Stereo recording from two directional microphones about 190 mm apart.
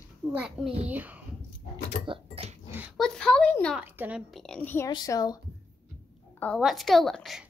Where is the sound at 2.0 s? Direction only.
30° right (ahead or behind).